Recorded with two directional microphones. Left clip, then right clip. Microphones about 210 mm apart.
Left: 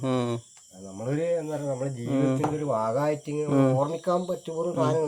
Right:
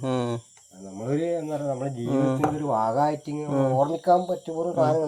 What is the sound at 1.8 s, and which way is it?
Speech, 15° left (ahead or behind).